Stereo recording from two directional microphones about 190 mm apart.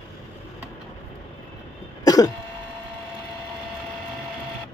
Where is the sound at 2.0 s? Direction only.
20° left (ahead or behind).